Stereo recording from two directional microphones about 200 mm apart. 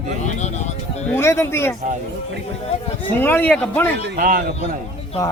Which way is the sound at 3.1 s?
10° left (ahead or behind).